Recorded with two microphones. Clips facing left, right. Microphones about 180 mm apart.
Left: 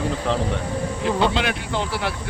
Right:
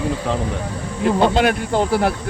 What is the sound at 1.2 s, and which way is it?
Speech, 45° right (ahead or behind).